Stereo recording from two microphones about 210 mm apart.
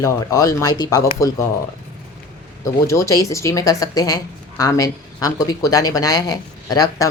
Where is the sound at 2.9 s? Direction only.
15° left (ahead or behind).